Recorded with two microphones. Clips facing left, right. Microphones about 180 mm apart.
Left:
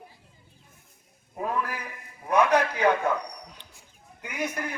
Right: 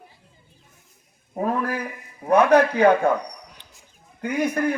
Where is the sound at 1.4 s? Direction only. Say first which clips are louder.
Right 6 dB; 50° right (ahead or behind).